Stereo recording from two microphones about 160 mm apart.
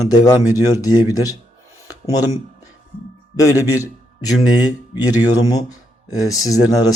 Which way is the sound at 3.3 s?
20° left (ahead or behind).